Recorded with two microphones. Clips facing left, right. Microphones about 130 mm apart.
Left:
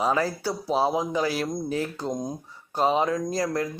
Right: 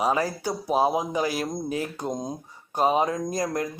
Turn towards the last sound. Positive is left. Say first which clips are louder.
# left 1 dB
turn(degrees=-20)  # may be behind; listen again after turning